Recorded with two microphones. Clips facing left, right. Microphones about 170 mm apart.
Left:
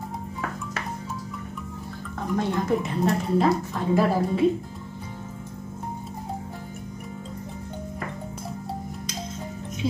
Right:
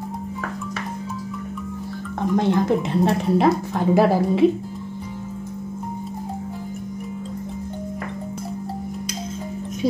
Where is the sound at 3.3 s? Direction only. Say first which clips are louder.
Right 4 dB; 80° right.